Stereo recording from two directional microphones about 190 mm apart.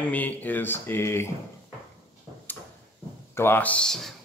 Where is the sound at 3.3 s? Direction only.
10° left (ahead or behind).